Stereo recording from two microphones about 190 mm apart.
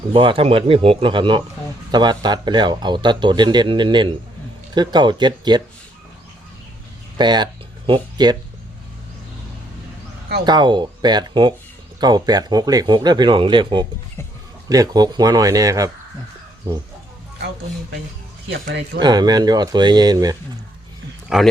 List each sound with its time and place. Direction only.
0.1 s speech: 25° right (ahead or behind)
7.2 s speech: 20° right (ahead or behind)
10.4 s speech: 25° right (ahead or behind)
18.9 s speech: 20° right (ahead or behind)
21.3 s a man's voice: centre (ahead or behind)